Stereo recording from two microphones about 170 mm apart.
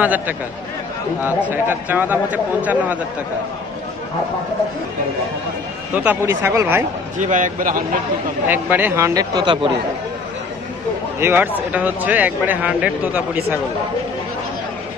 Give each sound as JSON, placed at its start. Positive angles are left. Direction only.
{"t": 0.0, "sound": "speech", "side_deg": -10}
{"t": 5.9, "sound": "speech", "side_deg": -10}
{"t": 7.2, "sound": "a man's voice", "side_deg": -50}
{"t": 8.5, "sound": "speech", "side_deg": -10}
{"t": 11.1, "sound": "speech", "side_deg": -15}